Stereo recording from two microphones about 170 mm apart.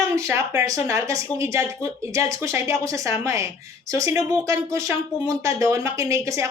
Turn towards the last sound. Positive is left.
turn(degrees=-15)  # may be behind; listen again after turning